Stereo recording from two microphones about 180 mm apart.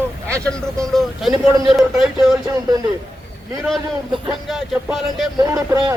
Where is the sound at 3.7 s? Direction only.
Centre (ahead or behind).